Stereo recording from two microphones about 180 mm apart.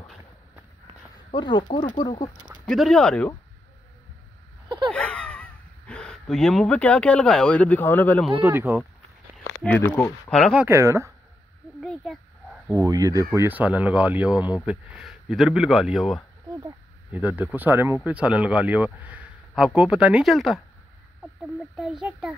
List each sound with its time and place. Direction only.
1.3 s speech: 25° left (ahead or behind)
2.7 s speech: centre (ahead or behind)
4.6 s a sound: 25° right (ahead or behind)
4.9 s speech: 5° left (ahead or behind)
8.4 s speech: 10° right (ahead or behind)
9.8 s speech: 15° left (ahead or behind)
10.3 s speech: centre (ahead or behind)
11.8 s a child's voice: 5° left (ahead or behind)
12.7 s speech: 20° right (ahead or behind); by 20.6 s centre (ahead or behind)
21.7 s speech: centre (ahead or behind)